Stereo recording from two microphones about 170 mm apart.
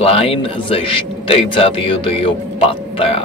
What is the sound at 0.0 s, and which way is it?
Speech, 35° left (ahead or behind).